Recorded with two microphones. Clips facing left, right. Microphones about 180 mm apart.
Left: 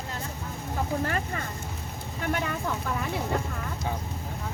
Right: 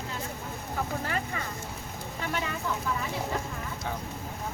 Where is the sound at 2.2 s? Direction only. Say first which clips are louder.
Left 4 dB; 50° left (ahead or behind).